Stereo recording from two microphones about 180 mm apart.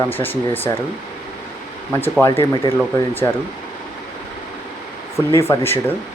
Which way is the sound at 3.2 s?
20° left (ahead or behind).